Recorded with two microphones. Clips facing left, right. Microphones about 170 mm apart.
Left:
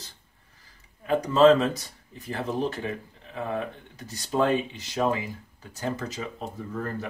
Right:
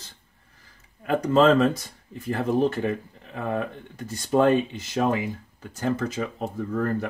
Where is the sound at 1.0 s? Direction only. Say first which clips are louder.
Even; 55° right (ahead or behind).